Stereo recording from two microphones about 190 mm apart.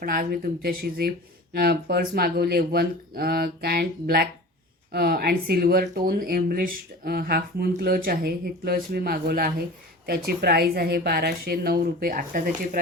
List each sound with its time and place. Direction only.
0.0 s a woman's voice: 50° right (ahead or behind)